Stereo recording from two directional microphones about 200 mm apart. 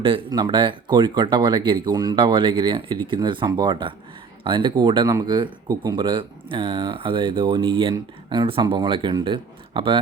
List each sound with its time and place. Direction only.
0.0 s speech: 25° right (ahead or behind)